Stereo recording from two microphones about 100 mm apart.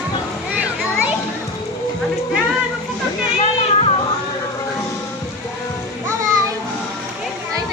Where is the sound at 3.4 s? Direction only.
80° left.